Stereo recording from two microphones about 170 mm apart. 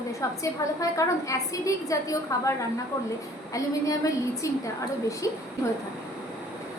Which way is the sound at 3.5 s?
20° left (ahead or behind).